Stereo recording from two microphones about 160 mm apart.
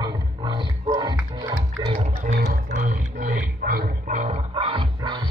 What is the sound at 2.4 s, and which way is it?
Music, 55° right (ahead or behind).